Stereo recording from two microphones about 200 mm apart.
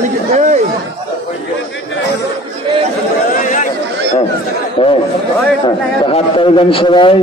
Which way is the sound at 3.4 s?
40° left (ahead or behind).